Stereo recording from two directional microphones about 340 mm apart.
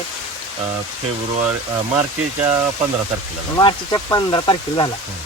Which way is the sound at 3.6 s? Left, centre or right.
Centre.